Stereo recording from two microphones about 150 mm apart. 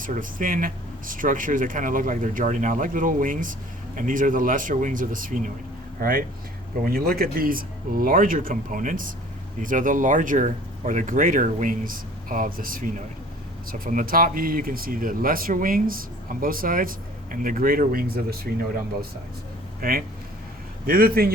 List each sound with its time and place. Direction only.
0.0 s speech: 65° right (ahead or behind)
19.8 s a man's voice: 85° right